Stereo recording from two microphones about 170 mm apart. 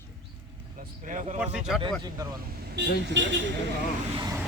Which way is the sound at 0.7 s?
50° right (ahead or behind).